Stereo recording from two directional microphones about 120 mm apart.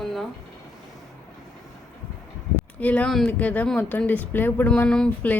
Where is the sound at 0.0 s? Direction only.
5° left (ahead or behind).